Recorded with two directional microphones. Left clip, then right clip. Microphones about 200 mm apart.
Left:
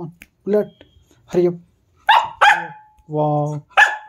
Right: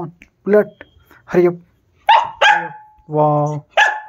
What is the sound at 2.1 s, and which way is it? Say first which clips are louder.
Dog: right 1 dB; 25° left (ahead or behind).